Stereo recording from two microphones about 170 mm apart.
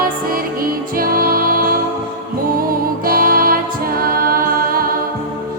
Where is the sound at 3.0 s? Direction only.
60° right (ahead or behind).